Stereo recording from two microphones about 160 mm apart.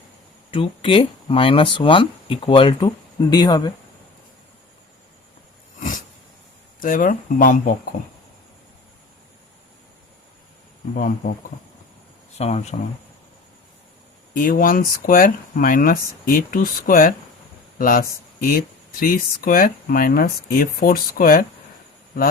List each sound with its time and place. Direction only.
0.5 s speech: 35° left (ahead or behind)
6.8 s speech: 55° left (ahead or behind)
10.9 s speech: 60° left (ahead or behind)
12.4 s speech: 40° left (ahead or behind)
14.3 s speech: 60° left (ahead or behind)